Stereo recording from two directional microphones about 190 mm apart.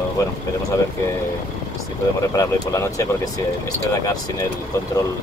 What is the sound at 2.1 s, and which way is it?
Speech, 15° left (ahead or behind).